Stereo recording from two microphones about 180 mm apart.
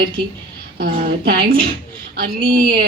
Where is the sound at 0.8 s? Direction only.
55° right (ahead or behind).